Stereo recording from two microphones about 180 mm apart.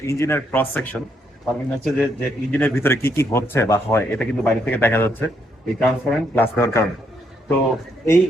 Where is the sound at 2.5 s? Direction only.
10° left (ahead or behind).